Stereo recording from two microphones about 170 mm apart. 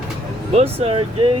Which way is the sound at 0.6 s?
35° right (ahead or behind).